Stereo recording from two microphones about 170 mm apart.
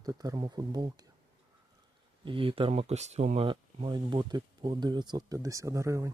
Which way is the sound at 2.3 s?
30° right (ahead or behind).